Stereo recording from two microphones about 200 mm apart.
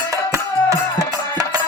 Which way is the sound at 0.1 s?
15° right (ahead or behind).